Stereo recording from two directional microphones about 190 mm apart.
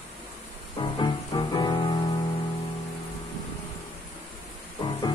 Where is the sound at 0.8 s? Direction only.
25° left (ahead or behind).